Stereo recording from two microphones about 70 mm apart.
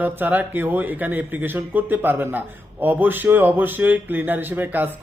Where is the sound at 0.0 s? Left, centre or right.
Right.